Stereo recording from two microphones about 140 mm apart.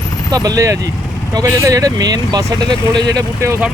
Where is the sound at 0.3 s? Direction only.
25° right (ahead or behind).